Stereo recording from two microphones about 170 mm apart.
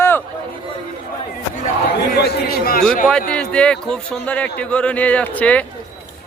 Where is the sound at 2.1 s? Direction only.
70° left (ahead or behind).